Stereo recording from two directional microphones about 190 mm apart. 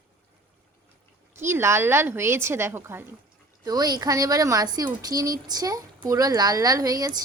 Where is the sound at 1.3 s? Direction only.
15° right (ahead or behind).